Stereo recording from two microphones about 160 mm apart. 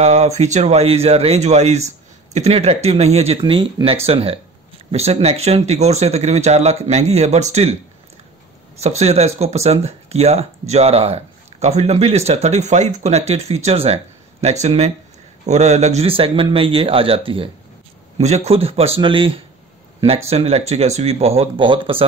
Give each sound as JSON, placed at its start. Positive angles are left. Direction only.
{"t": 0.0, "sound": "speech", "side_deg": -45}
{"t": 8.8, "sound": "speech", "side_deg": -40}